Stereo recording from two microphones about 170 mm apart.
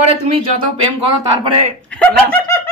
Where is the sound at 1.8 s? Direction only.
5° left (ahead or behind).